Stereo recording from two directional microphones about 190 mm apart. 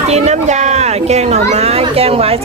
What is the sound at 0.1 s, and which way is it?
Speech, 35° right (ahead or behind).